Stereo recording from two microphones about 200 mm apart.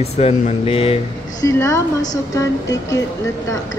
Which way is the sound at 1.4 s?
15° left (ahead or behind).